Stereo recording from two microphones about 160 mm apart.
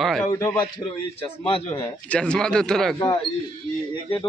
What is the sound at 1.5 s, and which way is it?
Speech, 35° left (ahead or behind).